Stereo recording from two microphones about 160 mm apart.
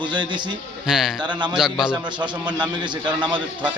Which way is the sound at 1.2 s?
25° right (ahead or behind).